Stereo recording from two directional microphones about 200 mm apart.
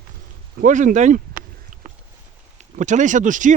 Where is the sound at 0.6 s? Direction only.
40° right (ahead or behind).